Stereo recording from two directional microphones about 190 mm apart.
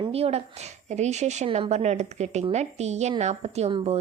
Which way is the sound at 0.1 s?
30° right (ahead or behind).